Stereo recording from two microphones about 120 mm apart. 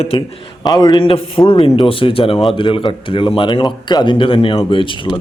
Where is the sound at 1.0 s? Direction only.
50° left (ahead or behind).